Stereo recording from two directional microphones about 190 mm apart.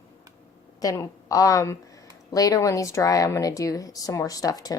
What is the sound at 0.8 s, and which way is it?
A woman's voice, 20° left (ahead or behind).